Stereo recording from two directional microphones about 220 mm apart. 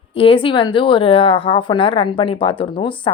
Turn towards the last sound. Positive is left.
turn(degrees=25)  # may be behind; listen again after turning